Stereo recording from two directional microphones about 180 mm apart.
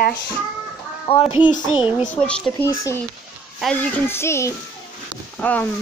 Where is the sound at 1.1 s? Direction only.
30° left (ahead or behind).